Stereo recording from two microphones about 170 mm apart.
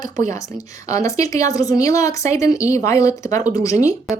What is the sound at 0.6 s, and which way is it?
A woman's voice, 20° left (ahead or behind).